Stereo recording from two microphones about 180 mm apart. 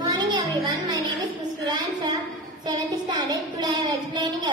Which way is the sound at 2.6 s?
25° right (ahead or behind).